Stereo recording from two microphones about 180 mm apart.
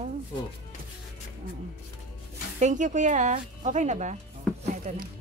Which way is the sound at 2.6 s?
45° right (ahead or behind).